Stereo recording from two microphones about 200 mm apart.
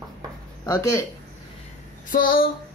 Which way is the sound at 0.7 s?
15° left (ahead or behind).